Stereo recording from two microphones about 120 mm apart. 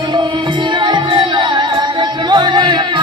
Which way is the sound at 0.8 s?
40° right (ahead or behind).